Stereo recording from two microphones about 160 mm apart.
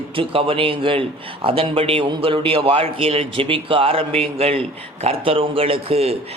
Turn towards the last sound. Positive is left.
turn(degrees=-35)  # may be behind; listen again after turning